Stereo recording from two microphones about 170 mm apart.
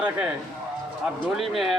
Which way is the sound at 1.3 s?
Centre (ahead or behind).